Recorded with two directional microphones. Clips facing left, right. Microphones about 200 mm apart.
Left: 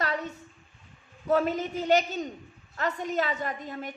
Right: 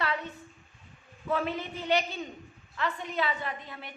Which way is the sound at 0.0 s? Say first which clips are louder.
Left 2 dB; 40° left (ahead or behind).